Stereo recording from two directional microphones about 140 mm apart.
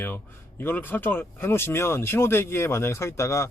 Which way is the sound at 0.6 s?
15° left (ahead or behind).